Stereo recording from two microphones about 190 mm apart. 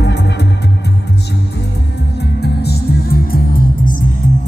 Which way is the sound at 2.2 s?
60° left (ahead or behind).